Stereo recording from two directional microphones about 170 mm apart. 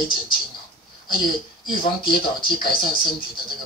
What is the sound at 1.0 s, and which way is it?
Speech, 30° left (ahead or behind).